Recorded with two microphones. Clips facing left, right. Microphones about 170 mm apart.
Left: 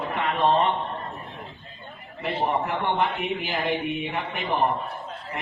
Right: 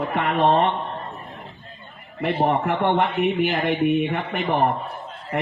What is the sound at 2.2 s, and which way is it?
A man's voice, 60° right (ahead or behind).